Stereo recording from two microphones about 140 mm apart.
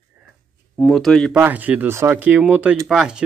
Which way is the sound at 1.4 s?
15° right (ahead or behind).